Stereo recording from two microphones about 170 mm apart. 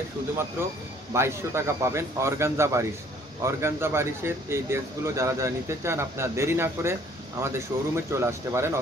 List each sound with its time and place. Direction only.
1.1 s speech: 15° right (ahead or behind)